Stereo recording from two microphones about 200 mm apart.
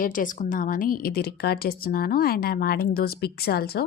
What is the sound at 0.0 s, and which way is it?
Speech, 40° left (ahead or behind).